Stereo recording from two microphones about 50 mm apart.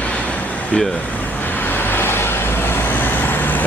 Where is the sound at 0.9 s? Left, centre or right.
Left.